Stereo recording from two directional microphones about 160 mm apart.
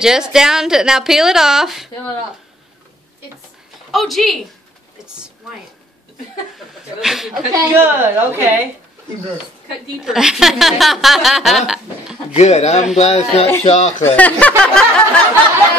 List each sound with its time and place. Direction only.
0.0 s speech: 5° right (ahead or behind)
3.9 s speech: centre (ahead or behind)
7.0 s speech: centre (ahead or behind)
7.5 s a woman's voice: 15° right (ahead or behind)
9.9 s speech: 5° right (ahead or behind)
12.4 s speech: 40° left (ahead or behind)
14.0 s speech: 10° left (ahead or behind)